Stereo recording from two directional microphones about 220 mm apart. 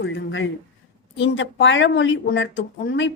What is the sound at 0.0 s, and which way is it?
A woman's voice, 60° left (ahead or behind).